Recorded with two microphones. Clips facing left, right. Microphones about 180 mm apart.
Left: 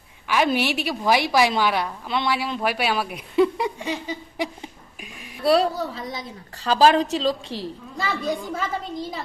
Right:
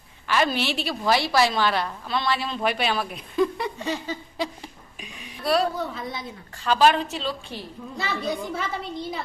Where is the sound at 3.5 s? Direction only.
15° left (ahead or behind).